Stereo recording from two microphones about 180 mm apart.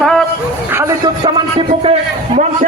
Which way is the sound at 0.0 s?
5° left (ahead or behind).